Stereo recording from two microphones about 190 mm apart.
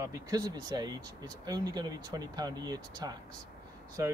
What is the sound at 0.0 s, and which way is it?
Speech, 20° right (ahead or behind).